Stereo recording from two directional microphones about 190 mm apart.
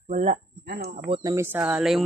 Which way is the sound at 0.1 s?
40° right (ahead or behind).